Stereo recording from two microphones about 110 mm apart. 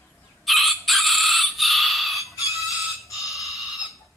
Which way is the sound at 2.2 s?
30° left (ahead or behind).